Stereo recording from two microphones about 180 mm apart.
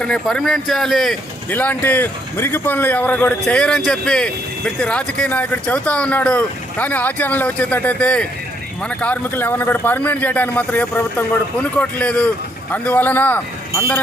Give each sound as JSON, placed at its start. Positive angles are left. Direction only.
{"t": 0.0, "sound": "speech", "side_deg": 5}